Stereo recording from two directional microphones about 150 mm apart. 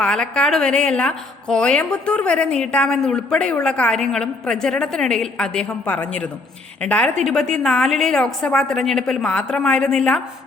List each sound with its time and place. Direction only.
0.0 s a woman's voice: 5° left (ahead or behind)